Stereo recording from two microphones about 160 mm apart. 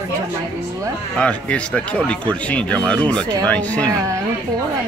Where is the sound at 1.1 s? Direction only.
5° left (ahead or behind).